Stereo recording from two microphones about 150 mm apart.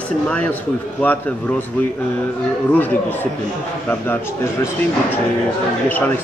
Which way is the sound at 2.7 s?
10° left (ahead or behind).